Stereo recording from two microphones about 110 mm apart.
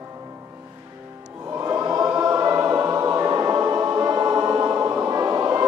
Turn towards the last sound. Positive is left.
turn(degrees=-30)  # may be behind; listen again after turning